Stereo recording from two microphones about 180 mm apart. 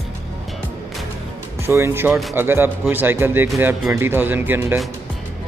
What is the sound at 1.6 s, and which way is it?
Speech, 15° right (ahead or behind).